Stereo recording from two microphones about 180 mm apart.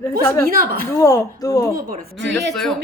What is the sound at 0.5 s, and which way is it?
Speech, 55° right (ahead or behind).